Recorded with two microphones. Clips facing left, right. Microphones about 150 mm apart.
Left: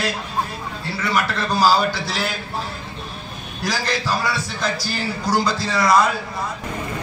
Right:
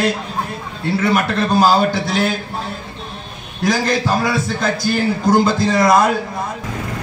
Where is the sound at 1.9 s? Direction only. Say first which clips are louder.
Right 7 dB; 55° right (ahead or behind).